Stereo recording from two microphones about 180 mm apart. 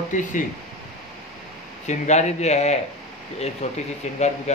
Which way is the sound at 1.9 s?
40° left (ahead or behind).